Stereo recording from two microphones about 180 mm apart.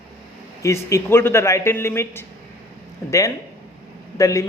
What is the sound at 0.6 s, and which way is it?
A man's voice, 15° left (ahead or behind).